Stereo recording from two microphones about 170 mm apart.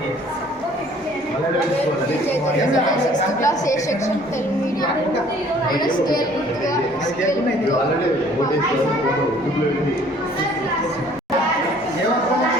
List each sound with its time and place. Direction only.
3.1 s a woman's voice: 20° left (ahead or behind)
5.8 s a woman's voice: 25° left (ahead or behind)